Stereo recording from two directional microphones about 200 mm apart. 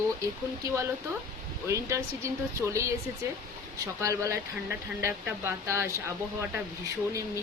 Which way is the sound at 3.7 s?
15° right (ahead or behind).